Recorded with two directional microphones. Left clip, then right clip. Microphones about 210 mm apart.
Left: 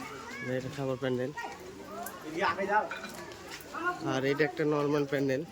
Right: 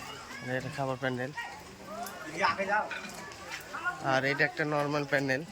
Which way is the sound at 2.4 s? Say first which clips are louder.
Even; 15° left (ahead or behind).